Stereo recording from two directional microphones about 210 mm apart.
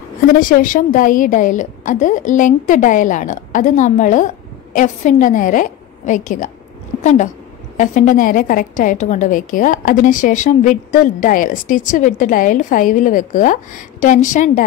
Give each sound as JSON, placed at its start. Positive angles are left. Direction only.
{"t": 0.4, "sound": "a woman's voice", "side_deg": 40}